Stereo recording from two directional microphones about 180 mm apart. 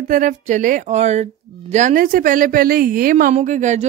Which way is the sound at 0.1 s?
45° right (ahead or behind).